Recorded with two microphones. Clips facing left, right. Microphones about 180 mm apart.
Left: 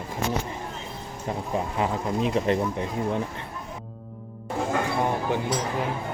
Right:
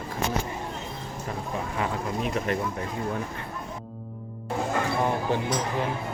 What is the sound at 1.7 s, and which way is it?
Speech, 30° left (ahead or behind).